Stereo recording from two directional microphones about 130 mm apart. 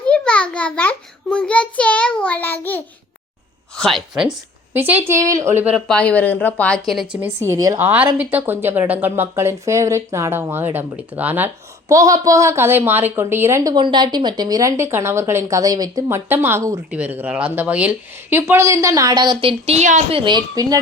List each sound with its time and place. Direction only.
0.0 s a child's voice: 10° left (ahead or behind)
3.8 s speech: centre (ahead or behind)
4.7 s speech: 15° right (ahead or behind)
5.9 s a woman's voice: 10° left (ahead or behind)
7.2 s speech: 15° right (ahead or behind)
7.8 s speech: 15° right (ahead or behind)
11.9 s speech: 25° right (ahead or behind)
13.7 s speech: 35° right (ahead or behind)
16.9 s speech: 10° right (ahead or behind); by 20.0 s 60° right (ahead or behind)
20.1 s a woman's voice: 40° right (ahead or behind)